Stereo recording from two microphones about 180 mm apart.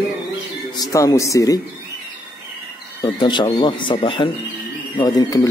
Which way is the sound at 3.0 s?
25° left (ahead or behind).